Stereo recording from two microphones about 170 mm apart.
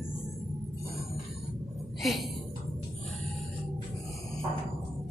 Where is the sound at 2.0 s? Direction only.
Centre (ahead or behind).